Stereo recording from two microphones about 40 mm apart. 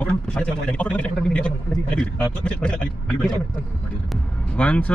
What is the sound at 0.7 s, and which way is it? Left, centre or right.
A man's voice, left.